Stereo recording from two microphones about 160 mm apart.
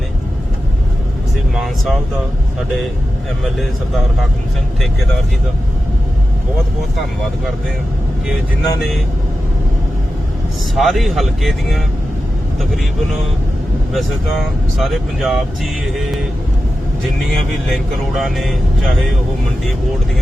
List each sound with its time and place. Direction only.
1.5 s speech: centre (ahead or behind)
3.4 s speech: centre (ahead or behind)
8.8 s speech: centre (ahead or behind)
10.8 s speech: centre (ahead or behind)
13.9 s speech: centre (ahead or behind)